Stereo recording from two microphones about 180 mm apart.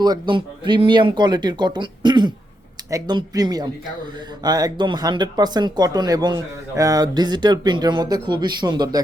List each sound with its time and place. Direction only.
0.0 s speech: 25° right (ahead or behind)